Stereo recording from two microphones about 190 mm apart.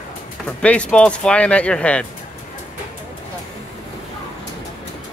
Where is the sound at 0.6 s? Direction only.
5° left (ahead or behind).